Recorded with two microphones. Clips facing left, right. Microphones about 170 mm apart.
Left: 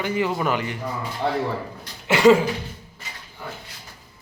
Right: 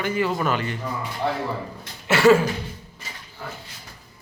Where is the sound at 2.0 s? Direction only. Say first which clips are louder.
Left 1 dB; 15° left (ahead or behind).